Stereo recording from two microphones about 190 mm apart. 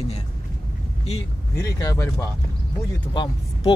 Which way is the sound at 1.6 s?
20° left (ahead or behind).